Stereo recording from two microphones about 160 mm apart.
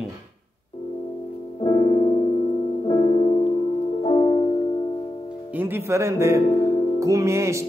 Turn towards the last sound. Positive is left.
turn(degrees=-15)  # may be behind; listen again after turning